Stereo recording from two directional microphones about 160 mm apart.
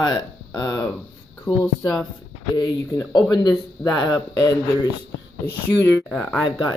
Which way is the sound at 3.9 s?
Centre (ahead or behind).